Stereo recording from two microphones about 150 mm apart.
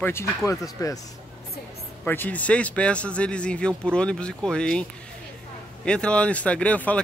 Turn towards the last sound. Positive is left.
turn(degrees=10)  # may be behind; listen again after turning